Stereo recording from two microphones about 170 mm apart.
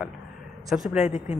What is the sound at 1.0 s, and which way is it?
Speech, 35° left (ahead or behind).